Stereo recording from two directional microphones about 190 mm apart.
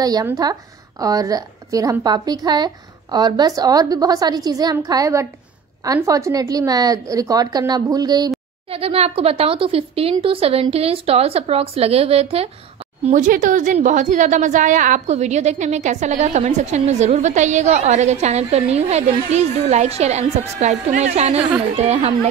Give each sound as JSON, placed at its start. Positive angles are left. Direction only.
{"t": 0.0, "sound": "a woman's voice", "side_deg": -20}
{"t": 13.0, "sound": "a woman's voice", "side_deg": -40}